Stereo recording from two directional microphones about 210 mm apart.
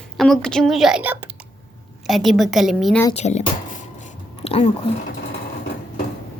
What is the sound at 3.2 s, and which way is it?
Speech, 30° left (ahead or behind).